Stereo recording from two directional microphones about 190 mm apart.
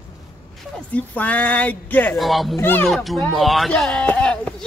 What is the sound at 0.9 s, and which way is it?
Speech, 10° left (ahead or behind).